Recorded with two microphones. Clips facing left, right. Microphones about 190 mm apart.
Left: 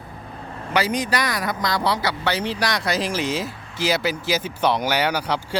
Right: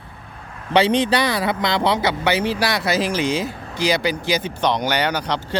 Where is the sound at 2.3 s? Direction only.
10° right (ahead or behind).